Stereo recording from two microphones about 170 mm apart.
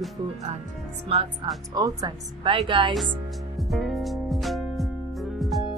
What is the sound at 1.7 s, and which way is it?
A woman's voice, 20° right (ahead or behind).